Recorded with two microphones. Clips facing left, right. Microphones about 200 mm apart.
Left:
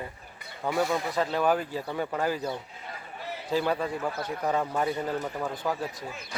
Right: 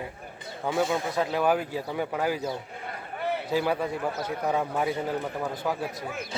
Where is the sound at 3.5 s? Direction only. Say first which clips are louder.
Left 1 dB; 10° right (ahead or behind).